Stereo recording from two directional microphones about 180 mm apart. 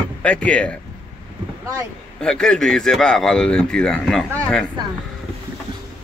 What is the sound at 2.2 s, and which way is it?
Speech, 5° left (ahead or behind).